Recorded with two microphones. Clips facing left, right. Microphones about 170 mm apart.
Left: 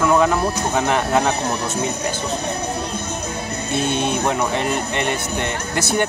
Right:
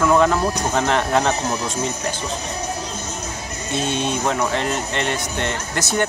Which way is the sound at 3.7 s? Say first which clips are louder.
Left 1 dB; 55° left (ahead or behind).